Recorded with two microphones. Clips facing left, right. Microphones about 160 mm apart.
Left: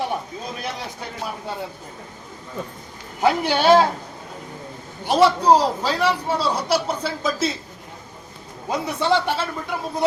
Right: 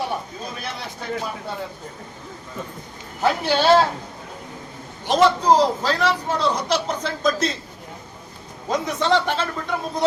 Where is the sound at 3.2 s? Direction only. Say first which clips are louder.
Left 1 dB; 15° left (ahead or behind).